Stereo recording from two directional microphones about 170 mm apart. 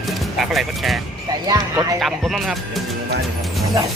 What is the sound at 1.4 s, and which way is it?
Speech, 20° right (ahead or behind).